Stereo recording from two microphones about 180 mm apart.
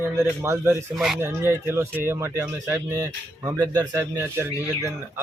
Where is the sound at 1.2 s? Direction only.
15° right (ahead or behind).